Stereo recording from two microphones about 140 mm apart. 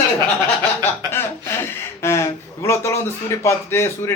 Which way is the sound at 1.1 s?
15° left (ahead or behind).